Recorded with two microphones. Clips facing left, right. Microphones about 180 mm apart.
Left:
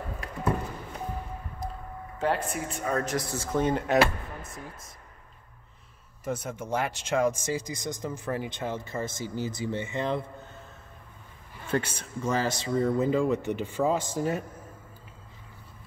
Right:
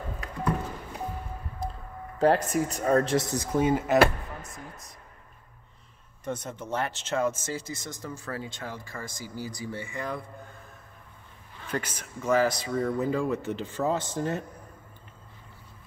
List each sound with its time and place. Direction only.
0.2 s a sound: 25° left (ahead or behind)
1.6 s a sound: 30° right (ahead or behind)
2.1 s speech: 40° right (ahead or behind); by 3.4 s 20° right (ahead or behind)
3.5 s speech: 5° right (ahead or behind)
6.2 s speech: 10° left (ahead or behind); by 10.5 s 25° left (ahead or behind)
11.7 s speech: 30° left (ahead or behind); by 14.4 s 10° left (ahead or behind)